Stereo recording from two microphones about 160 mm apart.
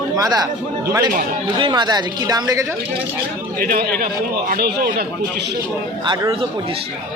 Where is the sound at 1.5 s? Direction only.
30° right (ahead or behind).